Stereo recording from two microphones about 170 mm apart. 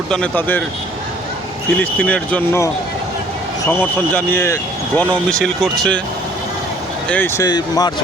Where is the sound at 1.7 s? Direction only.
10° left (ahead or behind).